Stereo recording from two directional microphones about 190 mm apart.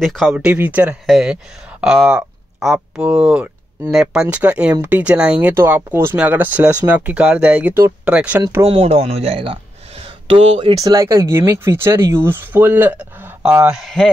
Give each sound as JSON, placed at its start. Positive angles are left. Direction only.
{"t": 0.0, "sound": "speech", "side_deg": 0}
{"t": 0.3, "sound": "speech", "side_deg": -10}
{"t": 8.6, "sound": "speech", "side_deg": -30}
{"t": 10.6, "sound": "speech", "side_deg": -20}